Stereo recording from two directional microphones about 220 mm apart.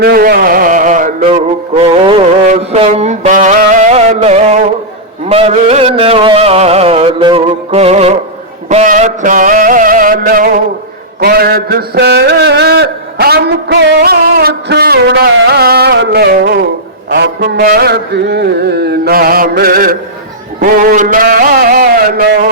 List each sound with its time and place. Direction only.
0.0 s music: 45° right (ahead or behind)
11.2 s a sound: 45° right (ahead or behind)
17.1 s music: 50° right (ahead or behind)